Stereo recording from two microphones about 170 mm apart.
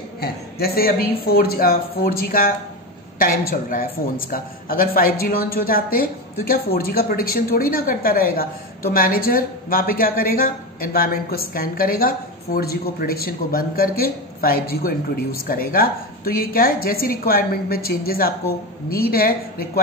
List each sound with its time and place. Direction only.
0.2 s a man's voice: 65° left (ahead or behind)